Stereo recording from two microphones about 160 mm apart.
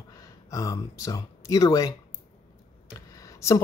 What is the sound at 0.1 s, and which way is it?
Speech, 20° left (ahead or behind).